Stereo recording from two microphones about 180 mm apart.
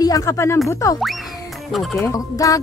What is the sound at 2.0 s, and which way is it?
Speech, 20° left (ahead or behind).